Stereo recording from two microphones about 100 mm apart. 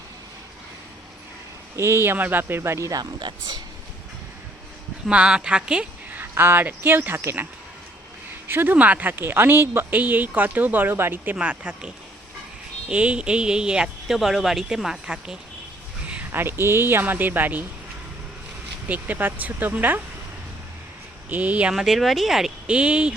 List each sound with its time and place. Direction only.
1.7 s speech: 25° right (ahead or behind)
3.2 s speech: 50° right (ahead or behind)
5.0 s speech: 10° right (ahead or behind); by 7.4 s 25° right (ahead or behind)
8.4 s speech: 20° right (ahead or behind)
11.3 s speech: 10° right (ahead or behind)
12.9 s speech: 10° right (ahead or behind)
16.0 s speech: 20° right (ahead or behind)
18.9 s speech: 15° right (ahead or behind)
21.2 s speech: 20° right (ahead or behind)